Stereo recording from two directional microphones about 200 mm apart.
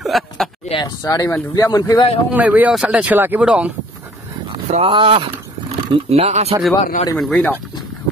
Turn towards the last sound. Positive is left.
turn(degrees=0)  # may be behind; listen again after turning